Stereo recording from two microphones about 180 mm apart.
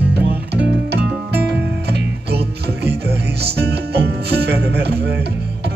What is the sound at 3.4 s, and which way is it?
Music, 65° right (ahead or behind).